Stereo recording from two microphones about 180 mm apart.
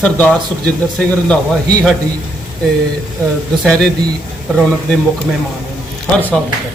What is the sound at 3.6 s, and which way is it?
Speech, 5° left (ahead or behind).